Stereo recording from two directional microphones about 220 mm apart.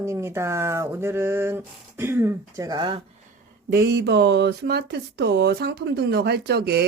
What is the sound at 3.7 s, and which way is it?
Speech, 45° right (ahead or behind).